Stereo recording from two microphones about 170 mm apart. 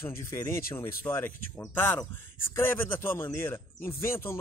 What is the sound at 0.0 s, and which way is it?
Speech, 15° left (ahead or behind).